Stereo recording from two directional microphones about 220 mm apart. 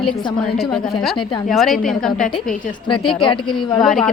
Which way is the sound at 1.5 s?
Centre (ahead or behind).